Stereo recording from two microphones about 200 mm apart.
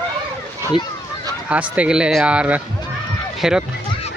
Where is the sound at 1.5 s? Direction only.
5° right (ahead or behind).